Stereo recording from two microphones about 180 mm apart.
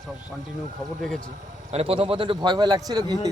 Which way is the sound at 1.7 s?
30° right (ahead or behind).